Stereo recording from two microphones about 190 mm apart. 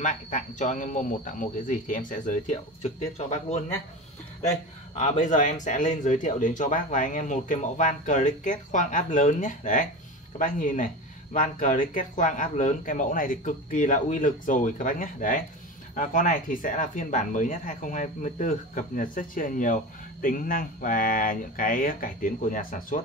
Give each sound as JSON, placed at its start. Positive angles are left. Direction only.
{"t": 0.0, "sound": "speech", "side_deg": 40}